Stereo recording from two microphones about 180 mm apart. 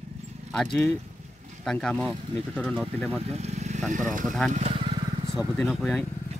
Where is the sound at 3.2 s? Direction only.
35° right (ahead or behind).